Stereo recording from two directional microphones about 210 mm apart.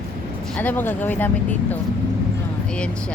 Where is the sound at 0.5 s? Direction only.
10° left (ahead or behind).